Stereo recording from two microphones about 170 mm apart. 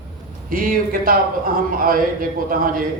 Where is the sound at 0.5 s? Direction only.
55° right (ahead or behind).